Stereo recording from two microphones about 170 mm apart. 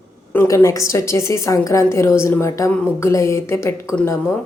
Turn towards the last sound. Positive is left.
turn(degrees=15)  # may be behind; listen again after turning